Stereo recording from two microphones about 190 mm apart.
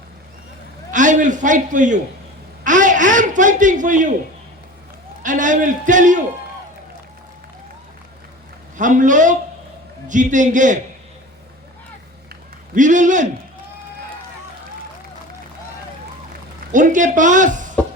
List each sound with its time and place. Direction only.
0.9 s a man's voice: 40° right (ahead or behind)
5.2 s speech: 40° right (ahead or behind)
8.8 s speech: 40° right (ahead or behind)
12.7 s speech: 40° right (ahead or behind)
16.7 s speech: 40° right (ahead or behind)